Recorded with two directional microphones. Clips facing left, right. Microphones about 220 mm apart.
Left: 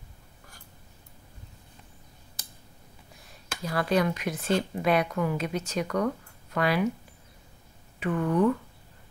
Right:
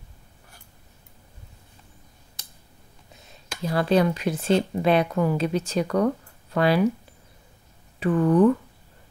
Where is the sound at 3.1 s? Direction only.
25° right (ahead or behind).